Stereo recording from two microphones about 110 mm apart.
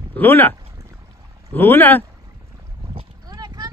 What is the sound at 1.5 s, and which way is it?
Speech, 20° left (ahead or behind).